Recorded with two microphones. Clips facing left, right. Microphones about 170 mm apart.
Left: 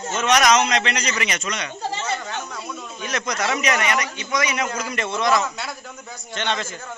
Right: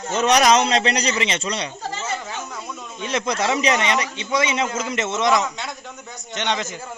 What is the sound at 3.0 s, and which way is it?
A man's voice, 25° right (ahead or behind).